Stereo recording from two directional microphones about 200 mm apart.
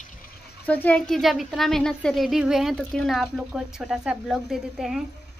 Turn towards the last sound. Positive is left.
turn(degrees=0)  # may be behind; listen again after turning